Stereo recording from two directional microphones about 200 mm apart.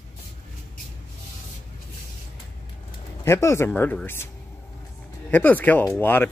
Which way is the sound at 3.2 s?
15° left (ahead or behind).